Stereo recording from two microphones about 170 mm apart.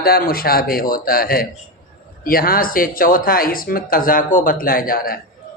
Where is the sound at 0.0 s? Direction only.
60° left (ahead or behind).